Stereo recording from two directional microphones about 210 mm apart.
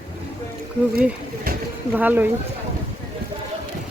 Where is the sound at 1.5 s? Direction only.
45° right (ahead or behind).